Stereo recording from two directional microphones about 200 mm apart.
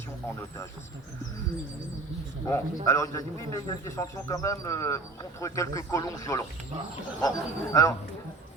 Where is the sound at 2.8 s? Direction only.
15° left (ahead or behind).